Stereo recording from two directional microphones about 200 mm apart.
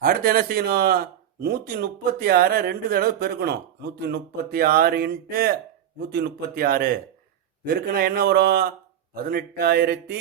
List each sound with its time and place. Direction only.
0.0 s speech: 45° right (ahead or behind)